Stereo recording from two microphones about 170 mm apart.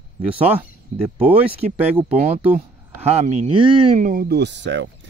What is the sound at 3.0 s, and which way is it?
Speech, 40° right (ahead or behind).